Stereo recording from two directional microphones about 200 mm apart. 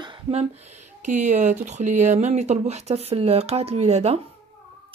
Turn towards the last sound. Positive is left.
turn(degrees=-35)  # may be behind; listen again after turning